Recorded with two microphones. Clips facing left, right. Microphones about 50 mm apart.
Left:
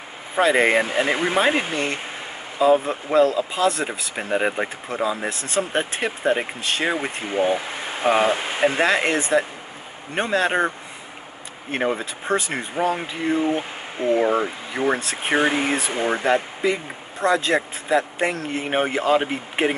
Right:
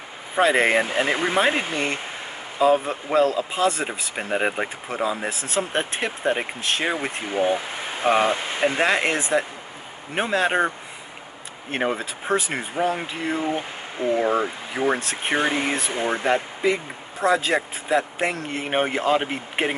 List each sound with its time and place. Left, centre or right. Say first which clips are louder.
0.4 s speech: left 1 dB; centre
8.8 s speech: left 1 dB; centre
11.7 s speech: left 1 dB; centre
13.6 s speech: left 1 dB; centre
14.2 s speech: left 1 dB; centre